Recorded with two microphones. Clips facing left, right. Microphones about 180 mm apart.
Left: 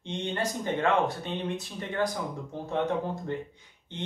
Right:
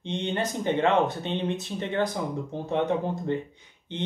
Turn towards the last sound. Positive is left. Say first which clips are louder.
# right 5 dB
turn(degrees=-20)  # may be behind; listen again after turning